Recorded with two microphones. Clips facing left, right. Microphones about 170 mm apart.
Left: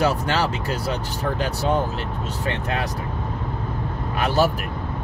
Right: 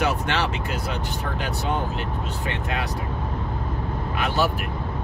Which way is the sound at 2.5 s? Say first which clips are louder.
Left 4 dB; 35° left (ahead or behind).